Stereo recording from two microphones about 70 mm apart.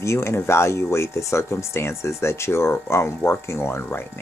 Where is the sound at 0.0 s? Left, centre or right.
Left.